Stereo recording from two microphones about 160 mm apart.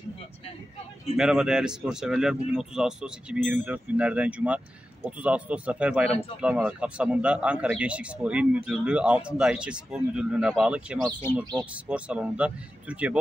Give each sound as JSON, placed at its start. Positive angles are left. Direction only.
{"t": 1.1, "sound": "a man's voice", "side_deg": -5}
{"t": 6.0, "sound": "speech", "side_deg": 40}
{"t": 6.4, "sound": "a man's voice", "side_deg": -5}